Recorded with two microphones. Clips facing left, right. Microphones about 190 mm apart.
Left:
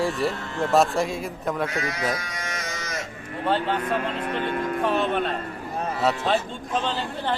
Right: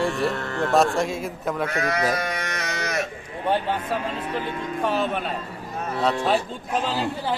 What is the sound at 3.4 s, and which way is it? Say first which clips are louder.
Speech: even; 15° right (ahead or behind).